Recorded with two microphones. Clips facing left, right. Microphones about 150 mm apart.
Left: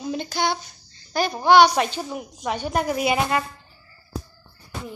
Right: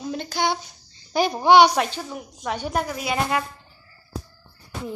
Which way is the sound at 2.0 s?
15° left (ahead or behind).